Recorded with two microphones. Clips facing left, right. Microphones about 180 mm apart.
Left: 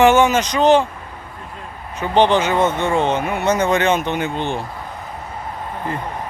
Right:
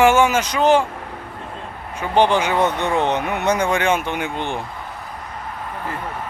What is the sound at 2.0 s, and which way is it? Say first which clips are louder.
Speech: left 2 dB; 10° right (ahead or behind).